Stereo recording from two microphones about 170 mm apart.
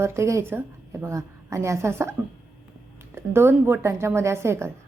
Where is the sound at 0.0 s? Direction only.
15° right (ahead or behind).